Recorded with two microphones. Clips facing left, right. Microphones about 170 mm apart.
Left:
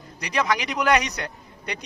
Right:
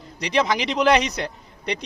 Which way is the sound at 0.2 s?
25° right (ahead or behind).